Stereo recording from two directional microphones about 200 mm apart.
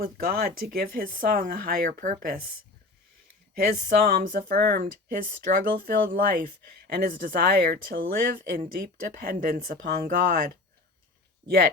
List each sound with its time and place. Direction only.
0.0 s speech: 50° right (ahead or behind)
3.5 s speech: 45° right (ahead or behind)
11.4 s speech: 50° right (ahead or behind)